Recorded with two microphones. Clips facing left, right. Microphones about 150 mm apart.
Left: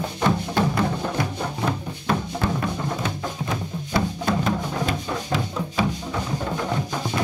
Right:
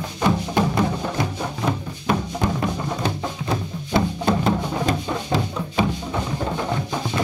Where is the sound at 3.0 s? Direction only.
30° right (ahead or behind).